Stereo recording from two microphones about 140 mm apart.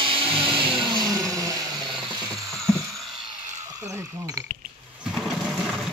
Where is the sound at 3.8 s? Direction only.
25° right (ahead or behind).